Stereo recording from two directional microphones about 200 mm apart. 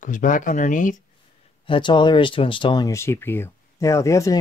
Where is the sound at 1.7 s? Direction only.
25° left (ahead or behind).